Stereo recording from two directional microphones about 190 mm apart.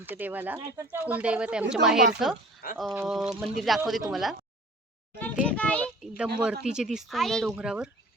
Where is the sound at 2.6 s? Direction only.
50° left (ahead or behind).